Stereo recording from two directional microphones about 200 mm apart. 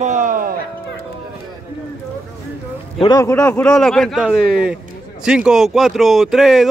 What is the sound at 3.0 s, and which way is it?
Speech, 15° left (ahead or behind).